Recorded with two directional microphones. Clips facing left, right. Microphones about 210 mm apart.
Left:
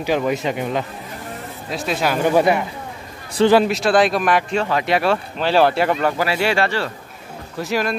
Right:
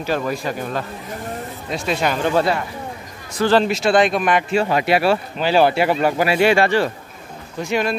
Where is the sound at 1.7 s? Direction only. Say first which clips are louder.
Even; centre (ahead or behind).